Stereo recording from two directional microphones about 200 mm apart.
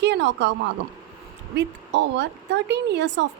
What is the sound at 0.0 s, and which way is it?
Speech, 60° right (ahead or behind).